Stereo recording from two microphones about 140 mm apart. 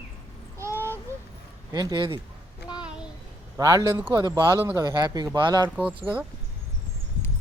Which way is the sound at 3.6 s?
25° right (ahead or behind).